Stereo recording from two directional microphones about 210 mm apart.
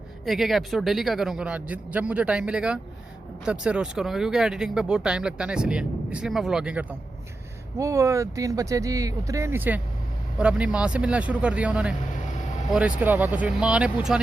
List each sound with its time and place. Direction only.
0.3 s speech: centre (ahead or behind)
7.8 s speech: 15° right (ahead or behind)